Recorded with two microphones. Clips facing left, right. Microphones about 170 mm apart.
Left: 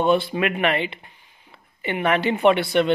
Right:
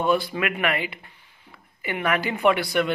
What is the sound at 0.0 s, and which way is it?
A man's voice, 25° left (ahead or behind).